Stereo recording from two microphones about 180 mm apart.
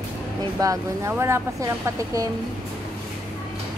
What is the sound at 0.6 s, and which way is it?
Speech, 15° right (ahead or behind).